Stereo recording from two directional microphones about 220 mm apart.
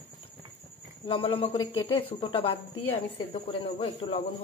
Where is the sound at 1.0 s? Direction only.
25° left (ahead or behind).